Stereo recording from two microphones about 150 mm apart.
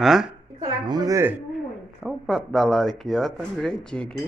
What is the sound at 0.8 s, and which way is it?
Speech, 25° right (ahead or behind).